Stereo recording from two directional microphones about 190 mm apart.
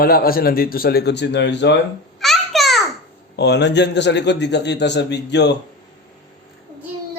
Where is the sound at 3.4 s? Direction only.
65° left (ahead or behind).